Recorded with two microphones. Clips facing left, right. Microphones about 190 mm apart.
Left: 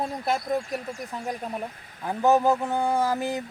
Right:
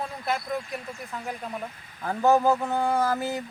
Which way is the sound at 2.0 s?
10° left (ahead or behind).